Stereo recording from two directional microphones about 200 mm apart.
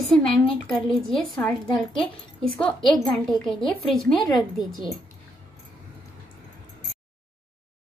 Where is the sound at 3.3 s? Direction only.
20° left (ahead or behind).